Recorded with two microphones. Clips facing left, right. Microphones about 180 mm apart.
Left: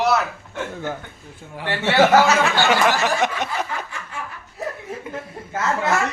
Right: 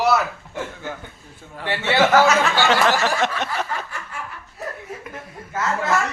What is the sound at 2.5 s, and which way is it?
Snicker, 15° left (ahead or behind).